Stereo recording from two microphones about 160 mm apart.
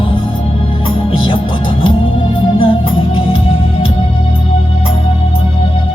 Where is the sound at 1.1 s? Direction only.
30° left (ahead or behind).